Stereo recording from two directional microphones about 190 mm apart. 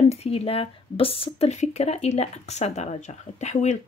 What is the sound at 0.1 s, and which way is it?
Speech, 30° left (ahead or behind).